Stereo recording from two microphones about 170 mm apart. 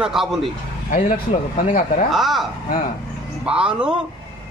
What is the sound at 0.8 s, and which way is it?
Speech, 55° left (ahead or behind).